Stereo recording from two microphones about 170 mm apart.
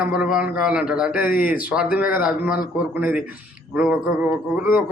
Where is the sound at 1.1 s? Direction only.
55° left (ahead or behind).